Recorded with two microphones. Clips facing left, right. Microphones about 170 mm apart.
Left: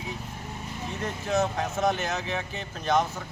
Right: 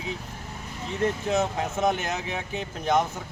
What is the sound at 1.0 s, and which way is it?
Speech, 20° right (ahead or behind).